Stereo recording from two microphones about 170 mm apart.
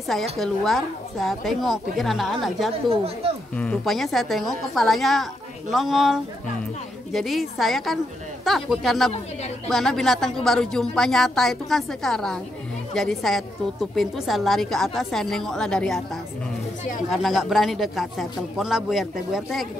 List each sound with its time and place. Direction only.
0.1 s a woman's voice: centre (ahead or behind)
17.1 s a woman's voice: centre (ahead or behind)